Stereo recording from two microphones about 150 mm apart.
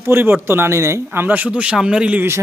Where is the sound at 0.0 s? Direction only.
15° right (ahead or behind).